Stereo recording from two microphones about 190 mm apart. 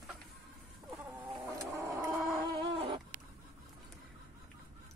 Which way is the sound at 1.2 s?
10° right (ahead or behind).